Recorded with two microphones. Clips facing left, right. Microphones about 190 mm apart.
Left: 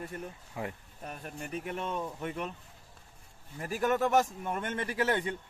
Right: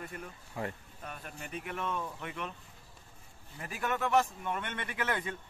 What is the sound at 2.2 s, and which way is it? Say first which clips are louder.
Speech: left 4 dB; 40° left (ahead or behind).